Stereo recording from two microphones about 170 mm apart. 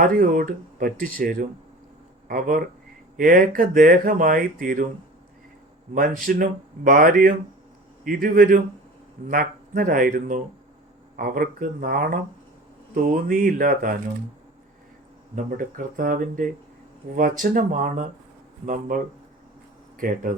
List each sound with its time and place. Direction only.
0.0 s speech: 55° right (ahead or behind)
6.2 s speech: 55° right (ahead or behind)
15.4 s speech: 55° right (ahead or behind)